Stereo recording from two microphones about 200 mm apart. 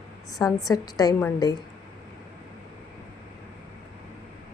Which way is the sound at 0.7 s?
20° left (ahead or behind).